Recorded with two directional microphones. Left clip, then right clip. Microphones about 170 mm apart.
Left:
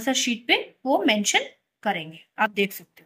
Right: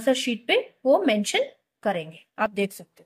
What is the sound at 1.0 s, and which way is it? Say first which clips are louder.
A woman's voice: left 1 dB; 55° right (ahead or behind).